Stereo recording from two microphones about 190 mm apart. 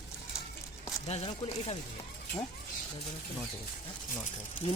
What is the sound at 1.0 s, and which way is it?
Speech, 35° left (ahead or behind).